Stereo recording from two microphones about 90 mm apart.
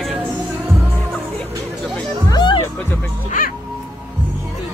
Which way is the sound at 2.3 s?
60° left (ahead or behind).